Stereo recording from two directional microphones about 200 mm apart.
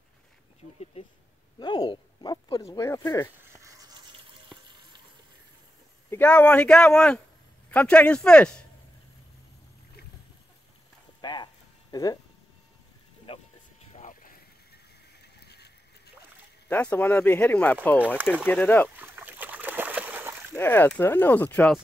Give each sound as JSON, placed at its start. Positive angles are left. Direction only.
{"t": 1.6, "sound": "speech", "side_deg": 20}
{"t": 6.0, "sound": "speech", "side_deg": 10}
{"t": 11.1, "sound": "a sound", "side_deg": 20}
{"t": 13.3, "sound": "vehicle", "side_deg": 25}
{"t": 13.9, "sound": "vehicle", "side_deg": 40}
{"t": 15.4, "sound": "a sound", "side_deg": 55}
{"t": 16.6, "sound": "speech", "side_deg": 10}
{"t": 18.9, "sound": "splash", "side_deg": -10}
{"t": 20.5, "sound": "speech", "side_deg": 10}